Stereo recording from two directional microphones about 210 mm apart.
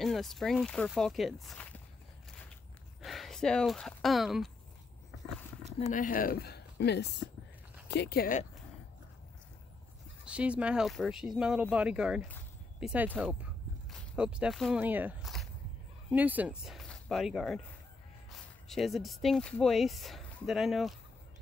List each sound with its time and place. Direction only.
0.0 s speech: centre (ahead or behind)
3.0 s speech: centre (ahead or behind)
5.9 s speech: 40° left (ahead or behind)
10.2 s speech: 5° right (ahead or behind)